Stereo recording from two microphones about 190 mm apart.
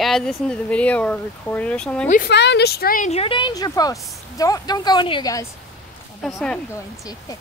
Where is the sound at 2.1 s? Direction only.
55° left (ahead or behind); by 5.4 s 20° left (ahead or behind).